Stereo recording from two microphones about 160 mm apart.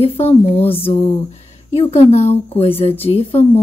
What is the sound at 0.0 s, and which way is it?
Speech, 40° left (ahead or behind).